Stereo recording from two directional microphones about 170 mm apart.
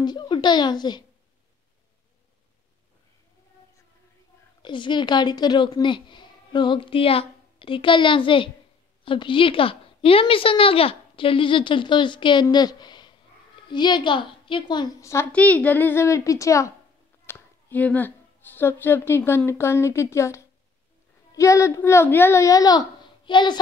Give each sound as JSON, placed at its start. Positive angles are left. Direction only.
{"t": 0.0, "sound": "a child's voice", "side_deg": 25}
{"t": 4.6, "sound": "a woman's voice", "side_deg": 30}